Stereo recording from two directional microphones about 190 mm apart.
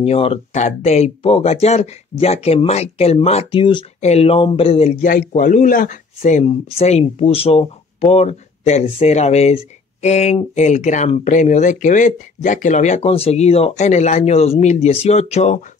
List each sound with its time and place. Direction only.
0.0 s speech: 30° left (ahead or behind)